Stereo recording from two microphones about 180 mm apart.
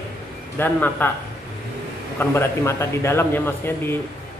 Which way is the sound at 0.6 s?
10° left (ahead or behind).